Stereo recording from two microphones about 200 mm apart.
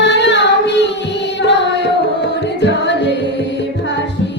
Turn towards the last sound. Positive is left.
turn(degrees=60)  # may be behind; listen again after turning